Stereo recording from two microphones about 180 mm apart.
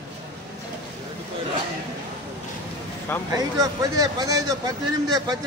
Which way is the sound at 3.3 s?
20° right (ahead or behind).